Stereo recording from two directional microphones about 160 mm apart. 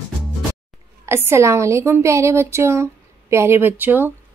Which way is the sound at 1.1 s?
15° right (ahead or behind).